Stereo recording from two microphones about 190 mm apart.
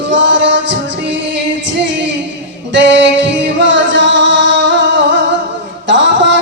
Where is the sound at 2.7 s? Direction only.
70° right (ahead or behind).